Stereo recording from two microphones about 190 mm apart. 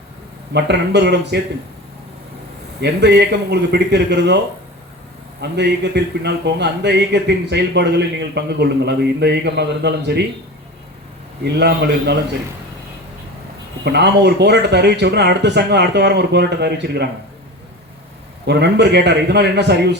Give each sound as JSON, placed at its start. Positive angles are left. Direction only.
{"t": 0.5, "sound": "a man's voice", "side_deg": -65}
{"t": 2.8, "sound": "a man's voice", "side_deg": -60}
{"t": 5.4, "sound": "a man's voice", "side_deg": -60}
{"t": 11.4, "sound": "a man's voice", "side_deg": -60}
{"t": 13.8, "sound": "a man's voice", "side_deg": -60}
{"t": 18.4, "sound": "a man's voice", "side_deg": -60}